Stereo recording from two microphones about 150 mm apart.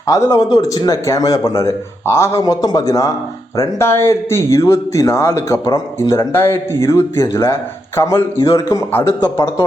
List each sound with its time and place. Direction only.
0.1 s a man's voice: 20° left (ahead or behind)